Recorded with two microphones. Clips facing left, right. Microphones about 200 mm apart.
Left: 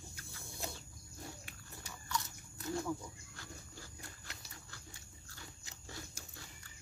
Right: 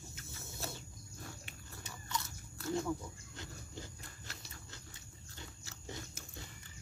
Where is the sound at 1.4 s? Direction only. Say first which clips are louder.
Right 1 dB; 20° right (ahead or behind).